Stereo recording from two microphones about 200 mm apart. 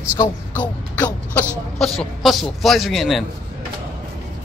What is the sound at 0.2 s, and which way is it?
A man's voice, 10° left (ahead or behind).